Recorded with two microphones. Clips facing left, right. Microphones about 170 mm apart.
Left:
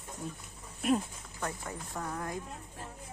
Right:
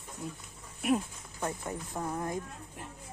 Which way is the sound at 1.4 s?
20° right (ahead or behind).